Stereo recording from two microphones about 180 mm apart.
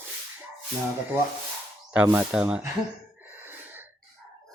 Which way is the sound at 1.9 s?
10° right (ahead or behind).